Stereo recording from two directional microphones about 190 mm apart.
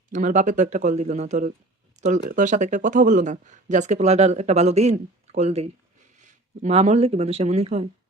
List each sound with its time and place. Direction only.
0.1 s speech: 40° right (ahead or behind)